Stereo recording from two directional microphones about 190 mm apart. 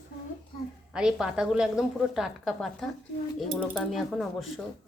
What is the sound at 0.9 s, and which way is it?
A woman's voice, 5° right (ahead or behind).